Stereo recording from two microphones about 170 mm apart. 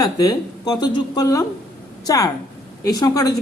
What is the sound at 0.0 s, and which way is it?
A man's voice, 20° left (ahead or behind).